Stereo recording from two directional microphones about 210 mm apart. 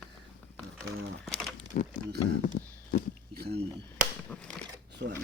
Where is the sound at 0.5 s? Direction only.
5° left (ahead or behind).